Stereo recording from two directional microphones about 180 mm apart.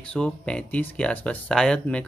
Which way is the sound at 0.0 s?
5° left (ahead or behind).